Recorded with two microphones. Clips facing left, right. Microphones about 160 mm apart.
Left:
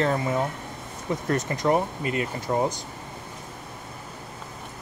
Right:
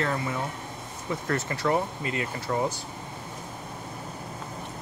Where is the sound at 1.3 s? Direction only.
25° left (ahead or behind).